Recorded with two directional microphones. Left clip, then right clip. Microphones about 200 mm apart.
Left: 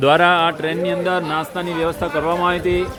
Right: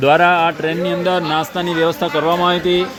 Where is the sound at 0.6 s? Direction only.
30° right (ahead or behind); by 2.8 s 50° right (ahead or behind).